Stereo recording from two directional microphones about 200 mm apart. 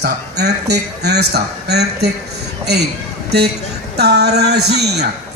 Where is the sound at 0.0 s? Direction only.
55° right (ahead or behind).